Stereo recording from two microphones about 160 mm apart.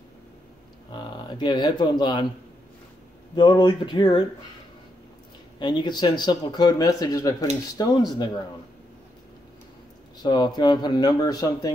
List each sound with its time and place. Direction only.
0.9 s speech: 30° left (ahead or behind)
3.3 s speech: 30° left (ahead or behind)
5.6 s speech: 25° left (ahead or behind)
10.1 s speech: 25° left (ahead or behind)